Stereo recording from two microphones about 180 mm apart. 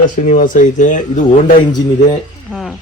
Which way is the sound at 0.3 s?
45° left (ahead or behind).